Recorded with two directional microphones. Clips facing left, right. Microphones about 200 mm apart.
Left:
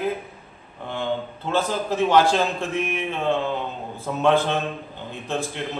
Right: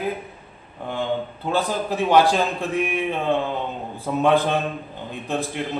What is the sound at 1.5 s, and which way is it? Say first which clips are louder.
A man's voice: even; 15° right (ahead or behind).